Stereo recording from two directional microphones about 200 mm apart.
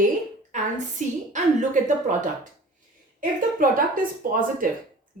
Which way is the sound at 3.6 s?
45° right (ahead or behind).